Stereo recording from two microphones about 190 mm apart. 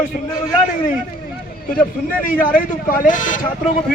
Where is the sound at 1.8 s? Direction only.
45° left (ahead or behind).